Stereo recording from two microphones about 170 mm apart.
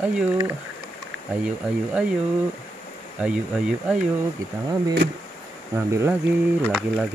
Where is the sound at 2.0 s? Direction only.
5° right (ahead or behind).